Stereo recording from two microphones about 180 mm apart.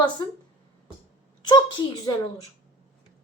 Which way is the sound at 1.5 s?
25° left (ahead or behind).